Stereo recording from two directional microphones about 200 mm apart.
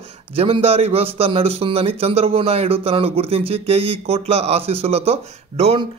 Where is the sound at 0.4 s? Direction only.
30° right (ahead or behind).